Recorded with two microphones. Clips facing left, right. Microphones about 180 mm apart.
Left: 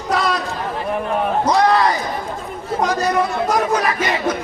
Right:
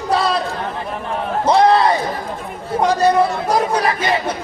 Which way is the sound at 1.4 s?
30° right (ahead or behind).